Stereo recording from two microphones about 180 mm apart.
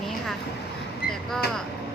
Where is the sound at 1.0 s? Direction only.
60° left (ahead or behind).